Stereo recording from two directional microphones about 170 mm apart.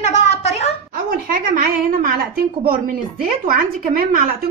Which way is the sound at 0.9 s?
55° right (ahead or behind).